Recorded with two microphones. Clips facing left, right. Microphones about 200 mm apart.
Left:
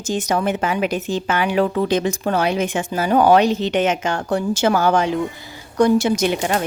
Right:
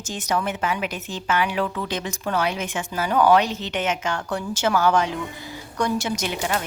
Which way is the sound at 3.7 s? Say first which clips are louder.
Left 6 dB; 30° left (ahead or behind).